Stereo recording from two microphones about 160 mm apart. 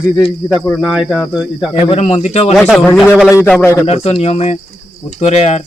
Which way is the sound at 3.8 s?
40° left (ahead or behind).